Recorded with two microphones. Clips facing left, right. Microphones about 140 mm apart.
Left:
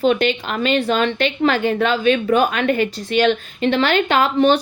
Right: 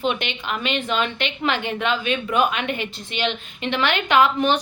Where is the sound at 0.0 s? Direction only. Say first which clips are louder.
Left 8 dB; 40° left (ahead or behind).